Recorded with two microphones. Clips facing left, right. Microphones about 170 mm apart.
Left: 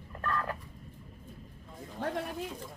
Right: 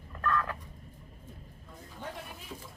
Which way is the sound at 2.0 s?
90° left.